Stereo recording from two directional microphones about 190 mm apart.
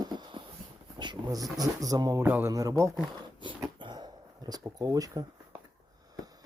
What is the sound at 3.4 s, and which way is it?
Dog, 25° right (ahead or behind).